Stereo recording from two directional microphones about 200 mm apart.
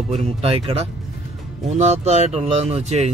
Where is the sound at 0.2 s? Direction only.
30° right (ahead or behind).